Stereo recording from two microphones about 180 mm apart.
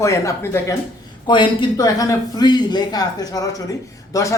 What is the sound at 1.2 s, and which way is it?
A man's voice, 25° left (ahead or behind).